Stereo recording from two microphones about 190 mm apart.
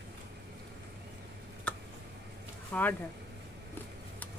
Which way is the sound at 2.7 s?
10° left (ahead or behind).